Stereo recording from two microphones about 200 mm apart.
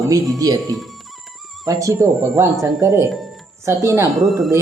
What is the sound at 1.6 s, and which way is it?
Speech, 15° right (ahead or behind).